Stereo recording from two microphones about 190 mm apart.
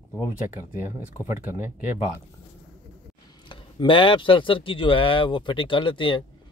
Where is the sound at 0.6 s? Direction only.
15° right (ahead or behind).